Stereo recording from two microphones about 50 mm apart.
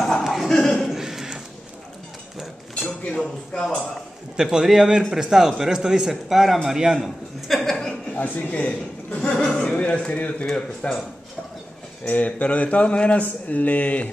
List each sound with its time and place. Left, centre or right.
0.2 s a sound: centre
0.5 s a sound: centre
0.9 s a sound: centre
3.6 s a man's voice: centre
4.4 s a man's voice: centre
6.8 s a man's voice: centre
7.4 s chuckle: centre
8.1 s a man's voice: left; by 11.0 s centre
12.1 s speech: left